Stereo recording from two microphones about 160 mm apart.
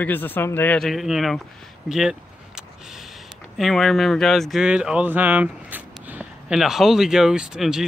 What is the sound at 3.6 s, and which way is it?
Speech, centre (ahead or behind).